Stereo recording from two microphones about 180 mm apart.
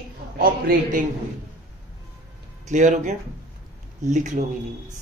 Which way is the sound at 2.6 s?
45° right (ahead or behind).